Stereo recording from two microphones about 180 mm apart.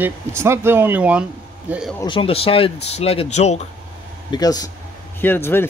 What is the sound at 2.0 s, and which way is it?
Speech, 30° left (ahead or behind).